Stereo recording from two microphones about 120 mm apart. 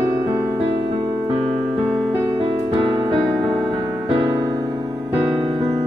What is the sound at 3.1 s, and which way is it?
Music, 50° right (ahead or behind).